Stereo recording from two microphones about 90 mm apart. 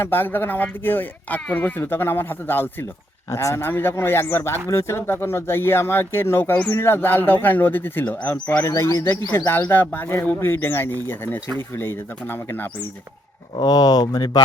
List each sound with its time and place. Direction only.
0.0 s speech: 25° left (ahead or behind)
13.7 s speech: 45° left (ahead or behind)